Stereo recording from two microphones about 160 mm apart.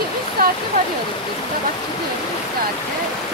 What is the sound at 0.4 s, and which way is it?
Waterfall, 65° right (ahead or behind).